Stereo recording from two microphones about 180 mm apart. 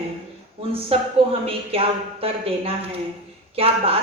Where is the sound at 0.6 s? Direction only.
30° right (ahead or behind).